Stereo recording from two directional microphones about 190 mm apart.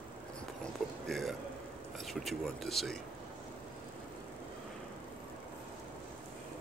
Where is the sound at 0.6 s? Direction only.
Centre (ahead or behind).